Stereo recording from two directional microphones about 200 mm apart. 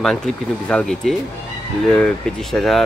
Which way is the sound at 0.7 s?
5° left (ahead or behind).